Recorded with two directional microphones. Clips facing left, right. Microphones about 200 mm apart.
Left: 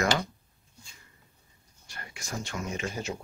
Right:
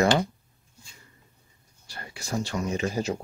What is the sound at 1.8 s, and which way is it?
Speech, 35° right (ahead or behind).